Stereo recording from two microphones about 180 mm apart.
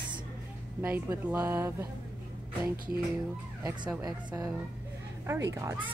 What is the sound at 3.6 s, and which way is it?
Speech, 20° right (ahead or behind).